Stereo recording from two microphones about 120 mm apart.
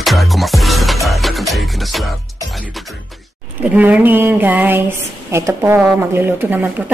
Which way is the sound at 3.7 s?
15° right (ahead or behind).